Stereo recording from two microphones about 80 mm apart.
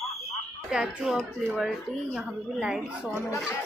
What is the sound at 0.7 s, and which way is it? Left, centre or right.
Speech, centre.